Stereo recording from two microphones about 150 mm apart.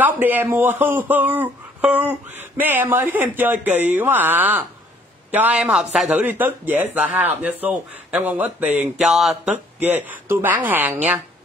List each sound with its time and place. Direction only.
0.0 s speech: 10° right (ahead or behind)